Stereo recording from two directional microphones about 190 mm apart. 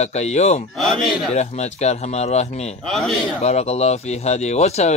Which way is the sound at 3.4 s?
35° left (ahead or behind).